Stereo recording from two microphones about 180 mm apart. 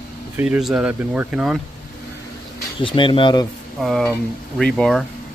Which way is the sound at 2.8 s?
30° left (ahead or behind).